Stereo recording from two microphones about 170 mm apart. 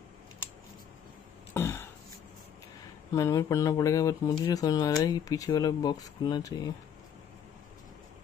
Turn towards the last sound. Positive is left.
turn(degrees=25)  # may be behind; listen again after turning